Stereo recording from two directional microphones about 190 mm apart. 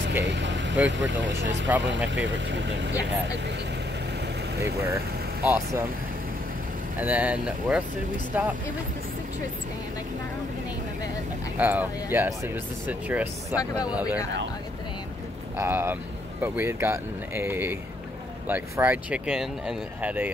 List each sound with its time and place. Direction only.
0.0 s speech: 70° right (ahead or behind)
4.8 s speech: 10° right (ahead or behind)
7.0 s speech: 10° right (ahead or behind)
11.5 s speech: 10° right (ahead or behind)
15.5 s speech: 10° right (ahead or behind)